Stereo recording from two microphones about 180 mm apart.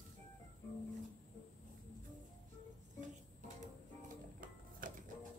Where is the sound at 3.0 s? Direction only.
45° right (ahead or behind).